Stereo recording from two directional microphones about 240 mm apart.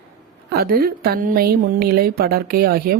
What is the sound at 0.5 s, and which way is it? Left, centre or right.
Speech, right.